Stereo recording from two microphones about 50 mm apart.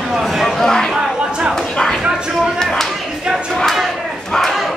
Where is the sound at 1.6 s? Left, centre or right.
Centre.